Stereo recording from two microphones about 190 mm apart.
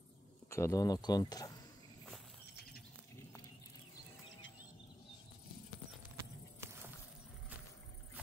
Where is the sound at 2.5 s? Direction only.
55° left (ahead or behind).